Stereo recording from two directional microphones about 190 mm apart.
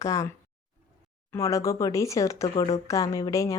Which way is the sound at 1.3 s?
15° left (ahead or behind).